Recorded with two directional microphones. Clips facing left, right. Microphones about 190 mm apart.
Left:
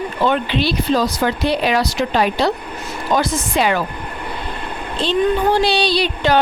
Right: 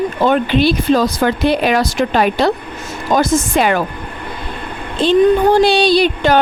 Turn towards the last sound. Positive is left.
turn(degrees=-50)  # may be behind; listen again after turning